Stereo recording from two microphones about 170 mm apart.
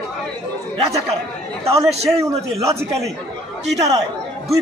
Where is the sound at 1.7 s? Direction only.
40° right (ahead or behind).